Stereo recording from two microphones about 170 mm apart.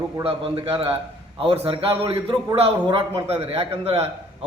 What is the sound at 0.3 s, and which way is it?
A man's voice, 30° right (ahead or behind).